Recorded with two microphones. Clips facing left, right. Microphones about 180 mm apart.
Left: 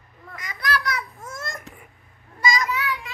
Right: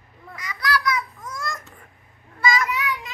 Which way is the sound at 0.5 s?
25° left (ahead or behind).